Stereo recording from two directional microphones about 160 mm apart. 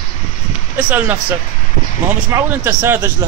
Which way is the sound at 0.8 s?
10° right (ahead or behind).